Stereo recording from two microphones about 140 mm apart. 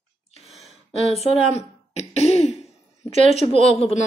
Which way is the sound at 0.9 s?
50° left (ahead or behind).